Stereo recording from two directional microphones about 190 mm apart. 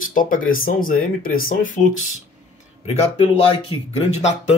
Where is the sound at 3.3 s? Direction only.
30° left (ahead or behind).